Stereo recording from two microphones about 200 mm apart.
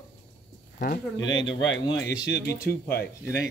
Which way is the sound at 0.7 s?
45° left (ahead or behind).